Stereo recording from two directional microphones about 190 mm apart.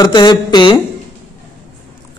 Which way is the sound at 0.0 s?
25° left (ahead or behind).